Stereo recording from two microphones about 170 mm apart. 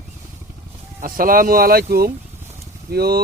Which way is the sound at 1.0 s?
55° right (ahead or behind).